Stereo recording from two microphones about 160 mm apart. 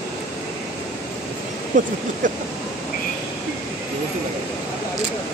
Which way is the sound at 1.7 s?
50° right (ahead or behind).